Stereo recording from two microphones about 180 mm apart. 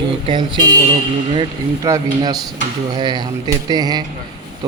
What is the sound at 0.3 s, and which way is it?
Speech, 25° right (ahead or behind).